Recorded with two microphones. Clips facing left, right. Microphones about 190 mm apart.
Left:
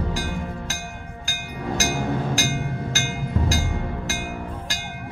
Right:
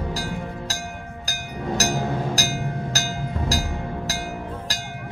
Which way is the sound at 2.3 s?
35° right (ahead or behind).